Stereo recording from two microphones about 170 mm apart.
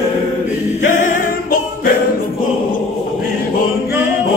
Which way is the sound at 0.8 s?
50° left (ahead or behind).